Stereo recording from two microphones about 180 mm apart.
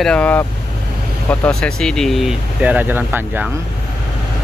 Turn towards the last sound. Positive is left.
turn(degrees=-10)  # may be behind; listen again after turning